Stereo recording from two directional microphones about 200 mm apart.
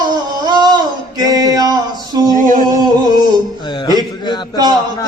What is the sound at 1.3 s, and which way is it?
Male singing, 20° right (ahead or behind).